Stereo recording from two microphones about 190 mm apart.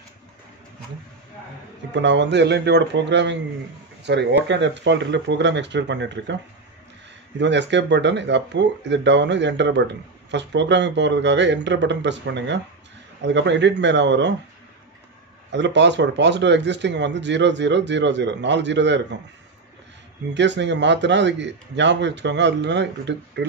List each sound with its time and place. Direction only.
2.0 s a man's voice: 70° right (ahead or behind)
7.3 s speech: 65° right (ahead or behind)
15.5 s speech: 70° right (ahead or behind)
20.3 s speech: 65° right (ahead or behind)